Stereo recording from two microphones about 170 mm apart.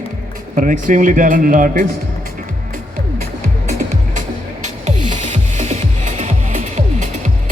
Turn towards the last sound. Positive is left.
turn(degrees=-50)  # may be behind; listen again after turning